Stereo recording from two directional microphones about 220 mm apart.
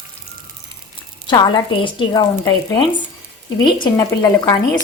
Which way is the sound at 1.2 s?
20° left (ahead or behind).